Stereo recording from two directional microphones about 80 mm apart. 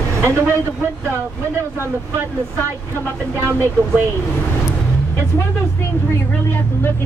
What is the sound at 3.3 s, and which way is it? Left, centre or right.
Speech, right.